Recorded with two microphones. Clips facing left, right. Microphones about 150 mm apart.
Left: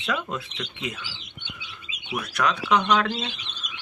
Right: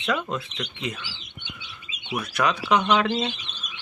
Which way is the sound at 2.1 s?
5° right (ahead or behind).